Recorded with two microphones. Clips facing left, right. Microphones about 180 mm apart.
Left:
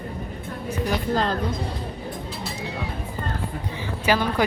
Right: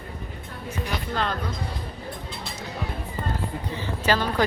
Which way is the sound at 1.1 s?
35° left (ahead or behind).